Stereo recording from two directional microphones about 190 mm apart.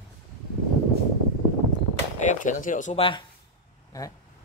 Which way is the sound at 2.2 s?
45° left (ahead or behind).